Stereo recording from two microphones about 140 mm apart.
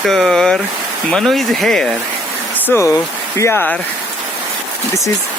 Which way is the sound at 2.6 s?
20° left (ahead or behind).